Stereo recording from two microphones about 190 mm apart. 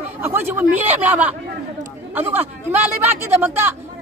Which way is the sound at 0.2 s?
10° right (ahead or behind).